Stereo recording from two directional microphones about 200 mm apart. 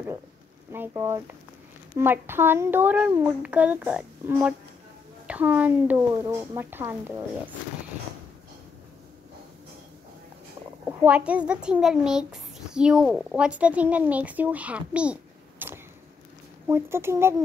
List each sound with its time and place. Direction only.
0.7 s a child's voice: 10° right (ahead or behind)
10.9 s a child's voice: 5° right (ahead or behind)
15.6 s arrow: 10° right (ahead or behind)
16.6 s a child's voice: 10° right (ahead or behind)